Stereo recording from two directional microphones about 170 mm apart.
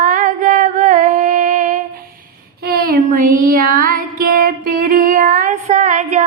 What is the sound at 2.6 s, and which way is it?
Child singing, 60° right (ahead or behind).